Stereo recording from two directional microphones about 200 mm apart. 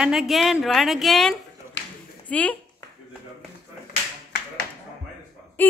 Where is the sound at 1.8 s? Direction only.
65° left (ahead or behind).